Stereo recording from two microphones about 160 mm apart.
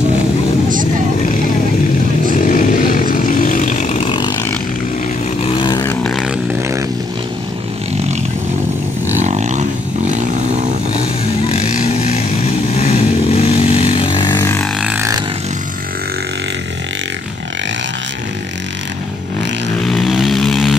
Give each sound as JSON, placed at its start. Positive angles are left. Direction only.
{"t": 2.5, "sound": "vehicle", "side_deg": 55}
{"t": 4.1, "sound": "vehicle", "side_deg": 25}
{"t": 5.4, "sound": "vehicle", "side_deg": 30}
{"t": 5.9, "sound": "vehicle", "side_deg": 5}
{"t": 9.2, "sound": "roaring cats", "side_deg": -45}
{"t": 11.4, "sound": "vehicle", "side_deg": 40}
{"t": 12.7, "sound": "vehicle", "side_deg": 40}
{"t": 19.9, "sound": "vehicle", "side_deg": 0}